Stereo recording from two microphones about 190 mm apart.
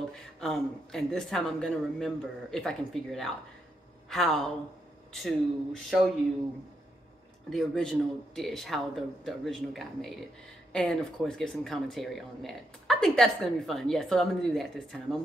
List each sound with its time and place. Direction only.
0.4 s speech: centre (ahead or behind)
7.4 s speech: centre (ahead or behind)